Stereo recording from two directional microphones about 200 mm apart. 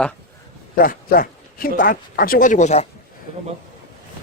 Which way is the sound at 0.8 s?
45° left (ahead or behind).